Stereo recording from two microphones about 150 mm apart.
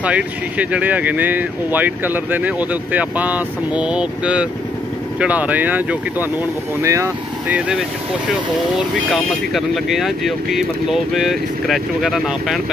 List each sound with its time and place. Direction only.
0.0 s speech: 10° right (ahead or behind)
7.5 s speech: 5° right (ahead or behind)